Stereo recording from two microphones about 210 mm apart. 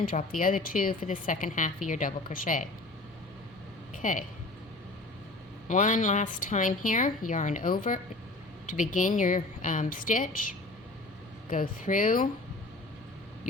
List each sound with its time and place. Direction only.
0.0 s speech: 40° left (ahead or behind)
4.0 s speech: 40° left (ahead or behind)
5.6 s a woman's voice: 35° left (ahead or behind)
11.4 s speech: 40° left (ahead or behind)